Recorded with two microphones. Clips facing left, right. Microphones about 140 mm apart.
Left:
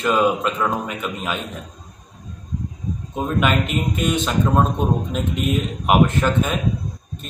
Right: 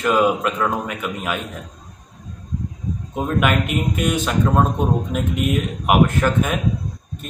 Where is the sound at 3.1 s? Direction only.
10° right (ahead or behind).